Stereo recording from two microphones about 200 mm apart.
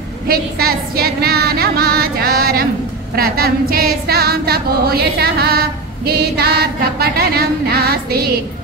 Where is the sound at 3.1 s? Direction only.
50° right (ahead or behind).